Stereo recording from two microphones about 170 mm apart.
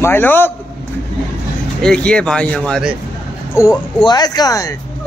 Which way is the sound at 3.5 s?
20° left (ahead or behind).